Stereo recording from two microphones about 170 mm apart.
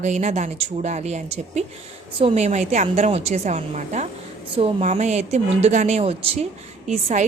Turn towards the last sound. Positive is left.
turn(degrees=-40)  # may be behind; listen again after turning